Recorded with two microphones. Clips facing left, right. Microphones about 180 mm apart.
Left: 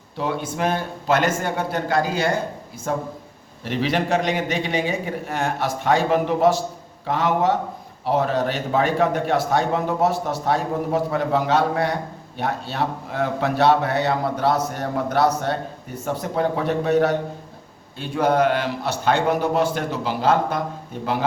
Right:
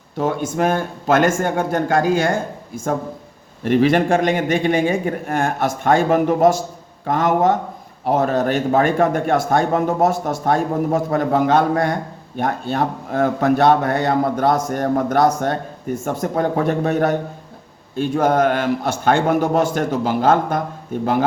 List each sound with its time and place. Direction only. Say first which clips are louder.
0.2 s a man's voice: right 5 dB; 45° right (ahead or behind)